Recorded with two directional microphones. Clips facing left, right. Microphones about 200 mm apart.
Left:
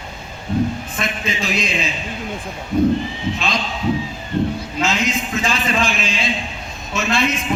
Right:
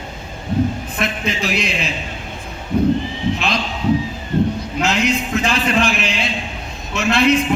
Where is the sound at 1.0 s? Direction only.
60° right (ahead or behind).